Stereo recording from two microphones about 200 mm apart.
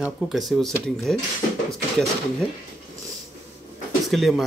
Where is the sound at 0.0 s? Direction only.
Centre (ahead or behind).